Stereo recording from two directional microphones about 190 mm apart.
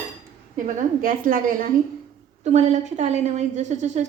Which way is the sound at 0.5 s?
40° right (ahead or behind).